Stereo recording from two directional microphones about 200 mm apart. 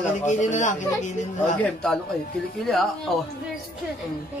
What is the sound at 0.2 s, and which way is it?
A man's voice, 35° left (ahead or behind).